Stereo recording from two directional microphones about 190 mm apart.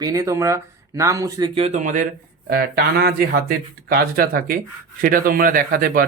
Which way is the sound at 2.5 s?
55° right (ahead or behind).